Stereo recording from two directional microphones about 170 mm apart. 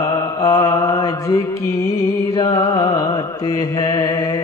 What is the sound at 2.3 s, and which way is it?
Music, 20° left (ahead or behind).